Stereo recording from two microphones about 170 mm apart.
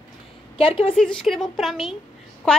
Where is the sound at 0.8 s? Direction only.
5° left (ahead or behind).